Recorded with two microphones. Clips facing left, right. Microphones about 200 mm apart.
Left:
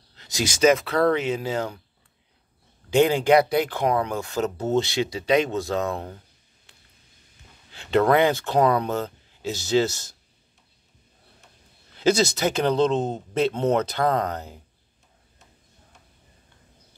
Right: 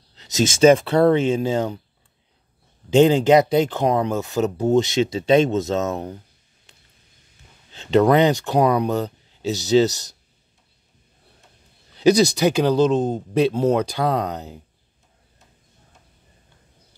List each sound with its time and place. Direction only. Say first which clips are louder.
0.1 s speech: right 7 dB; 20° right (ahead or behind)
2.9 s speech: right 4 dB; 20° right (ahead or behind)
7.7 s speech: right 4 dB; 20° right (ahead or behind)
11.9 s speech: right 5 dB; 15° right (ahead or behind)